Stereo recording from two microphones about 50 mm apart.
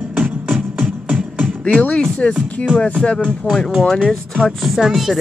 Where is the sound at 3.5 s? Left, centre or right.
Left.